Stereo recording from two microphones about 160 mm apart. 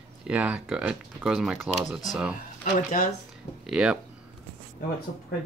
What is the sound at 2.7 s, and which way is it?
Speech, 55° left (ahead or behind).